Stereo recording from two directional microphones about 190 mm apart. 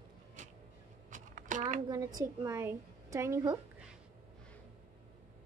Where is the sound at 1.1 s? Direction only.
40° right (ahead or behind).